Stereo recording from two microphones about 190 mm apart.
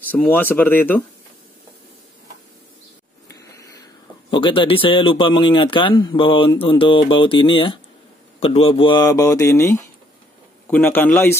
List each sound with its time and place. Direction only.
0.1 s speech: 10° left (ahead or behind)
3.3 s speech: 15° left (ahead or behind)